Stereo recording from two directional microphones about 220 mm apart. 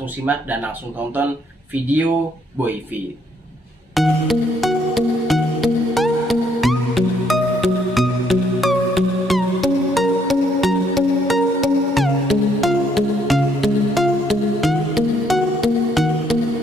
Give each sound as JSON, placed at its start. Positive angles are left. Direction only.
{"t": 0.2, "sound": "speech", "side_deg": -5}
{"t": 3.9, "sound": "music", "side_deg": 0}